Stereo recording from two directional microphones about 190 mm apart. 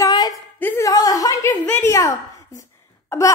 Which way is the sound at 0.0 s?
20° left (ahead or behind).